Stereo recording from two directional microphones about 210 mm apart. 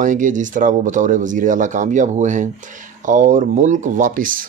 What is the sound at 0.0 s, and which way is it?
Speech, 40° right (ahead or behind).